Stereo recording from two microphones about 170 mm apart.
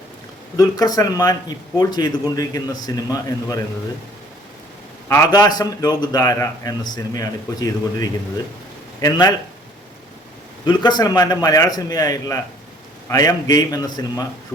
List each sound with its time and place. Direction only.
0.5 s a man's voice: 20° left (ahead or behind)
5.0 s a man's voice: 15° left (ahead or behind)
10.7 s a man's voice: 25° left (ahead or behind)